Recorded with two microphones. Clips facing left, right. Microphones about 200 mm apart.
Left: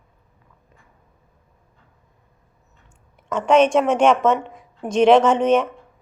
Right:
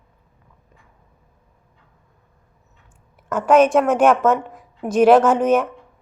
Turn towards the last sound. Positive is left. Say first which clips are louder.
# even
turn(degrees=-5)  # may be behind; listen again after turning